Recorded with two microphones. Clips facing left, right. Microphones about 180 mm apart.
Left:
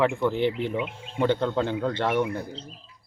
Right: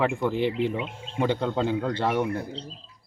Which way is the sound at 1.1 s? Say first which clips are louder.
Left 1 dB; 10° right (ahead or behind).